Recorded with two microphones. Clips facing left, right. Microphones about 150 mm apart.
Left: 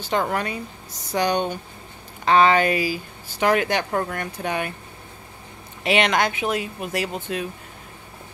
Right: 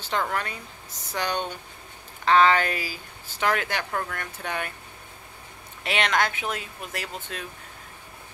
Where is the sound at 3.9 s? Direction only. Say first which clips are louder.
Left 6 dB; 30° left (ahead or behind).